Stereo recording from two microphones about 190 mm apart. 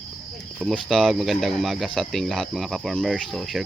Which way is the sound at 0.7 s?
5° left (ahead or behind).